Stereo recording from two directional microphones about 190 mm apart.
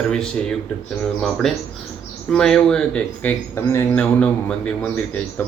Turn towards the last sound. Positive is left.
turn(degrees=5)  # may be behind; listen again after turning